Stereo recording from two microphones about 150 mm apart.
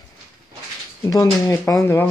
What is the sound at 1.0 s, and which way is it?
Speech, 20° left (ahead or behind).